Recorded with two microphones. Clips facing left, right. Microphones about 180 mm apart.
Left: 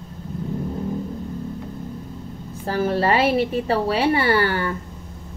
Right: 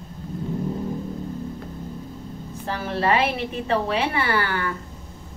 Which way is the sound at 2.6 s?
40° left (ahead or behind).